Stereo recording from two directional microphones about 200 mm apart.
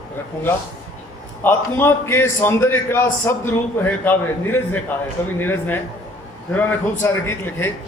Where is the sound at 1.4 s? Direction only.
10° left (ahead or behind).